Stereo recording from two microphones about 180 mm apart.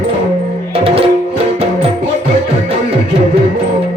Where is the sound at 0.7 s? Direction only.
30° right (ahead or behind).